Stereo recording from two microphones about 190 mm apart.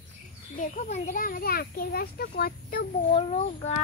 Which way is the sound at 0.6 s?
40° left (ahead or behind).